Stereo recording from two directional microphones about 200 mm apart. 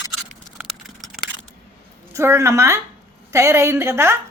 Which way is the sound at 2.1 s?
15° right (ahead or behind).